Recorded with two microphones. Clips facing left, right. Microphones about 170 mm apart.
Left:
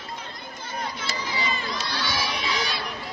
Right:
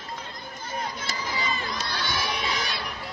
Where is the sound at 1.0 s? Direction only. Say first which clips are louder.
Left 1 dB; 50° right (ahead or behind).